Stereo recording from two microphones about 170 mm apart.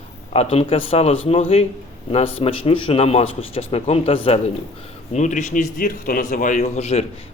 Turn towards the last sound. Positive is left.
turn(degrees=40)  # may be behind; listen again after turning